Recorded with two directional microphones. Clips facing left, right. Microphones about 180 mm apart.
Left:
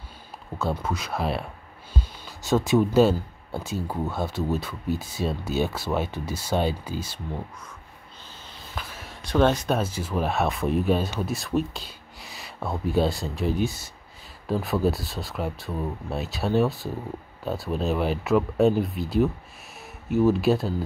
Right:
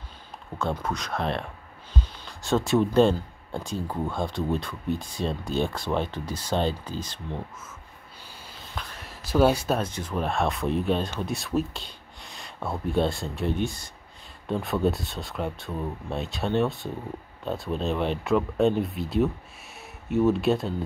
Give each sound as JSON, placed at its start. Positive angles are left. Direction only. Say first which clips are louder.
{"t": 0.6, "sound": "speech", "louder": "left 1 dB", "side_deg": 5}
{"t": 2.0, "sound": "a sound", "louder": "even", "side_deg": 5}
{"t": 2.8, "sound": "speech", "louder": "left 1 dB", "side_deg": 5}
{"t": 8.7, "sound": "speech", "louder": "left 1 dB", "side_deg": 5}
{"t": 9.8, "sound": "speech", "louder": "left 2 dB", "side_deg": 5}